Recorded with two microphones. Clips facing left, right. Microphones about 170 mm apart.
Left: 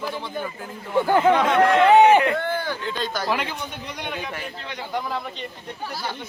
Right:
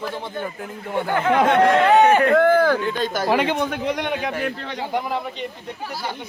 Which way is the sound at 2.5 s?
90° right.